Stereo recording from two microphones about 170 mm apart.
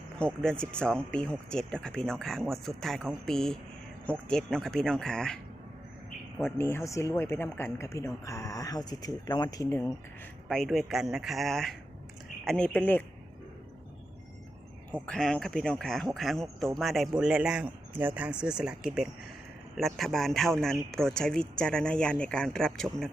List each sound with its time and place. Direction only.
0.4 s speech: 5° left (ahead or behind)
6.4 s speech: 15° left (ahead or behind)
10.5 s speech: centre (ahead or behind)
15.0 s speech: 5° left (ahead or behind)